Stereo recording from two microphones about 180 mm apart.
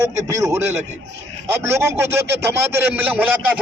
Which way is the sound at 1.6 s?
15° right (ahead or behind).